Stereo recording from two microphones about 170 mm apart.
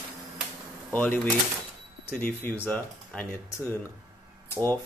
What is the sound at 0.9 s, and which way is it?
Speech, 10° left (ahead or behind).